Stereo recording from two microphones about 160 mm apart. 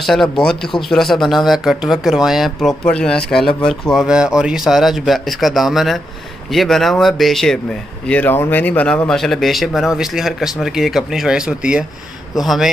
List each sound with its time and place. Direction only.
0.0 s speech: centre (ahead or behind)